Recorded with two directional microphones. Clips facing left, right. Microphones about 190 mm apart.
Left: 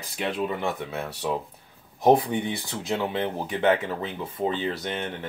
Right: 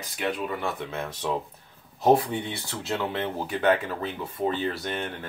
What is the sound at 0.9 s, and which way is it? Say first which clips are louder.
Speech: left 1 dB; 10° left (ahead or behind).